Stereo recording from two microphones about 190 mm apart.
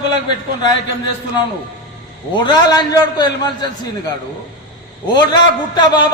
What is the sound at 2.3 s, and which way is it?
A man's voice, 25° left (ahead or behind).